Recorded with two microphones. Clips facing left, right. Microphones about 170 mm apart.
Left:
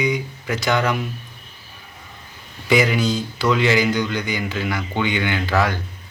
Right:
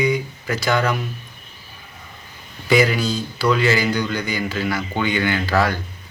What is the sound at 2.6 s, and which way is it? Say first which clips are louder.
Speech: even; 15° left (ahead or behind).